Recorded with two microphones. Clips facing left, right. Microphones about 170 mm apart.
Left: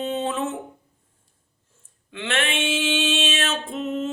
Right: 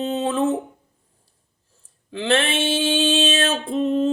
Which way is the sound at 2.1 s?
35° right (ahead or behind).